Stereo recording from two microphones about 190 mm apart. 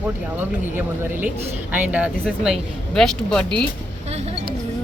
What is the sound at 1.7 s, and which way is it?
Speech, 10° right (ahead or behind).